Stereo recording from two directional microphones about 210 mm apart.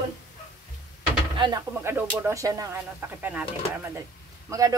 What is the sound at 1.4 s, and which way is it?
Speech, 15° right (ahead or behind).